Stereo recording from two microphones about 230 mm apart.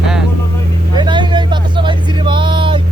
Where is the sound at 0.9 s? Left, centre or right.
Centre.